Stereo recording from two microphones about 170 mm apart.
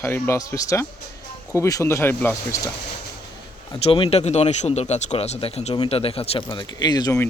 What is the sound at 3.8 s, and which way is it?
Speech, 35° left (ahead or behind).